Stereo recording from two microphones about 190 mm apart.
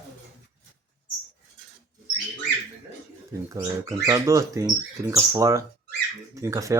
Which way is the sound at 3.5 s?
15° right (ahead or behind).